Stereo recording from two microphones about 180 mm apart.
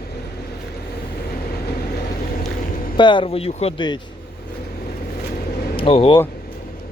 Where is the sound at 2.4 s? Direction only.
50° left (ahead or behind).